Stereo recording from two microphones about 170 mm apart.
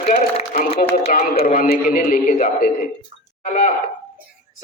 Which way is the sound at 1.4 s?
60° left (ahead or behind).